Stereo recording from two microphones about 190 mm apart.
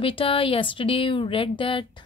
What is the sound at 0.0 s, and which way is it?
A woman's voice, 30° left (ahead or behind).